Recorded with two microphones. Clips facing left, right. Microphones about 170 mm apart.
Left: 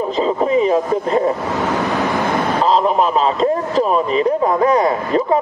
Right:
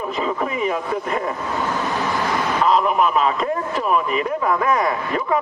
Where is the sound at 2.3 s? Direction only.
30° left (ahead or behind).